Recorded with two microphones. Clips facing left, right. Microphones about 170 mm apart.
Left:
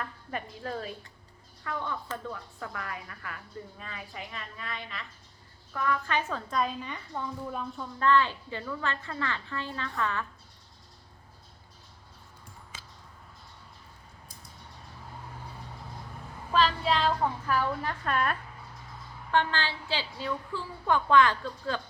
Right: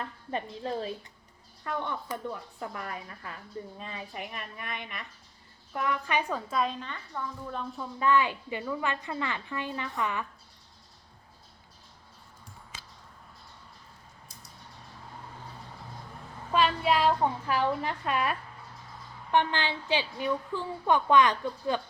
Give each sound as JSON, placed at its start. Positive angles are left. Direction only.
{"t": 0.0, "sound": "a woman's voice", "side_deg": -25}
{"t": 7.5, "sound": "a woman's voice", "side_deg": 0}
{"t": 16.5, "sound": "child singing", "side_deg": -10}
{"t": 17.4, "sound": "a woman's voice", "side_deg": -15}